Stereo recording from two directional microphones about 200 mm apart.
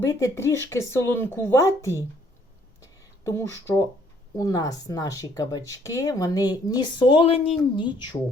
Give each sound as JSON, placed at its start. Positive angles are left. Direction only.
{"t": 0.0, "sound": "speech", "side_deg": 15}
{"t": 2.8, "sound": "a sound", "side_deg": 15}
{"t": 4.4, "sound": "speech", "side_deg": 20}